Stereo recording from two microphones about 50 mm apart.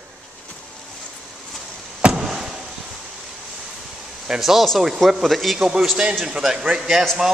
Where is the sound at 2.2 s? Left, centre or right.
Centre.